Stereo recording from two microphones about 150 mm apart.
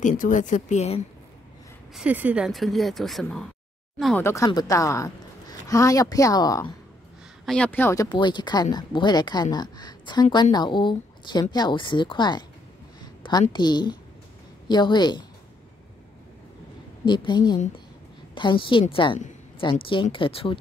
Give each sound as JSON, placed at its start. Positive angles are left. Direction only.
{"t": 0.0, "sound": "speech", "side_deg": 55}
{"t": 2.0, "sound": "speech", "side_deg": -10}
{"t": 4.2, "sound": "a woman's voice", "side_deg": 20}
{"t": 7.4, "sound": "speech", "side_deg": 5}
{"t": 7.9, "sound": "a woman's voice", "side_deg": 25}
{"t": 17.0, "sound": "speech", "side_deg": 30}